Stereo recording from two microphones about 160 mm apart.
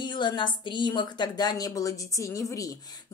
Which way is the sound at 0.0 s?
30° left (ahead or behind).